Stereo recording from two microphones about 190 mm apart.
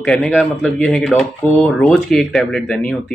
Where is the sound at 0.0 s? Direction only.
5° left (ahead or behind).